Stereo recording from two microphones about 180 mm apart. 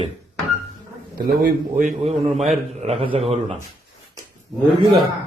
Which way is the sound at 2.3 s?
Centre (ahead or behind).